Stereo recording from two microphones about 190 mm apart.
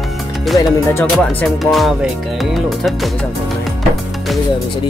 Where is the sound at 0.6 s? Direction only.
15° left (ahead or behind).